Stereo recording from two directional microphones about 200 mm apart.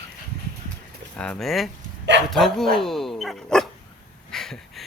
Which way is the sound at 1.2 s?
5° left (ahead or behind).